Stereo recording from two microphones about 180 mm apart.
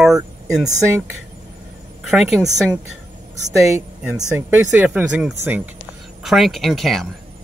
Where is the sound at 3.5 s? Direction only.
15° right (ahead or behind).